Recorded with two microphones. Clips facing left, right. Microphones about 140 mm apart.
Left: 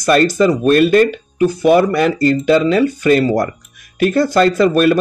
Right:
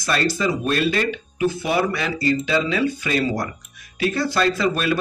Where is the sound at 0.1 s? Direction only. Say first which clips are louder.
Left 9 dB; 50° left (ahead or behind).